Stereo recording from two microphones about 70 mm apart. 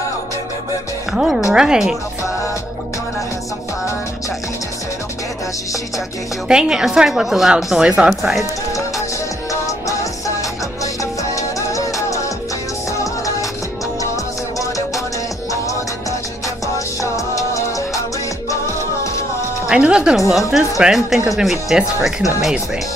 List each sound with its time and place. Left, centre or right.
1.1 s a woman's voice: centre
6.4 s a woman's voice: centre
8.1 s speech: centre
9.5 s music: left
11.3 s music: left
16.7 s music: left
19.7 s a woman's voice: centre
20.2 s speech: centre